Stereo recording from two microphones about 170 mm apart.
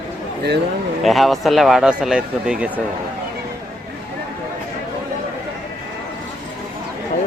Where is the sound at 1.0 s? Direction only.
Centre (ahead or behind).